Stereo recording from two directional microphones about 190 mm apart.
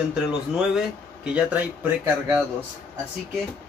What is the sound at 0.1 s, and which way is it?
Speech, 5° right (ahead or behind).